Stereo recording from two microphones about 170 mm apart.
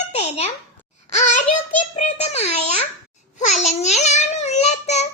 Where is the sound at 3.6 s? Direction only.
40° left (ahead or behind).